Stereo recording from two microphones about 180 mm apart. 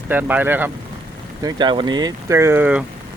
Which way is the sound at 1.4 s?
20° right (ahead or behind).